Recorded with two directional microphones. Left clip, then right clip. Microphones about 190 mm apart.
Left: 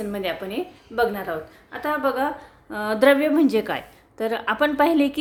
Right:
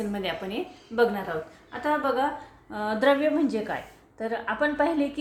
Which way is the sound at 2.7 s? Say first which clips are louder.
Left 5 dB; 35° left (ahead or behind).